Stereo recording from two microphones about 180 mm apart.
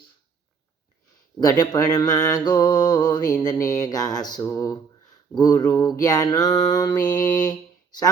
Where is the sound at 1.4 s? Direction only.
20° left (ahead or behind).